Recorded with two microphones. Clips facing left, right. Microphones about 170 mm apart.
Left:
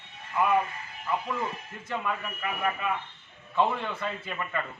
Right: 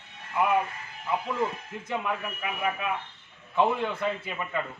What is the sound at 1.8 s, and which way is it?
A man's voice, 15° right (ahead or behind).